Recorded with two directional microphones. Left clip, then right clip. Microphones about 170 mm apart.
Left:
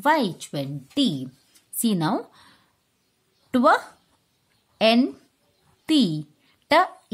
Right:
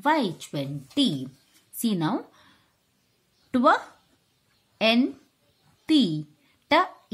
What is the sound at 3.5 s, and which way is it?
A woman's voice, 30° left (ahead or behind).